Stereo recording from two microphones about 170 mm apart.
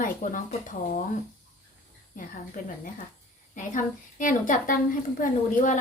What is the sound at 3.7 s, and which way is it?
A woman's voice, 50° left (ahead or behind).